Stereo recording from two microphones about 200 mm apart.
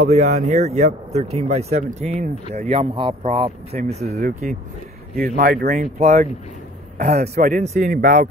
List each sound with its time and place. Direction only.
0.0 s speech: 35° right (ahead or behind)